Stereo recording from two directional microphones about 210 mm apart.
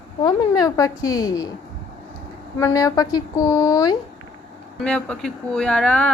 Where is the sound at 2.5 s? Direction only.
15° left (ahead or behind).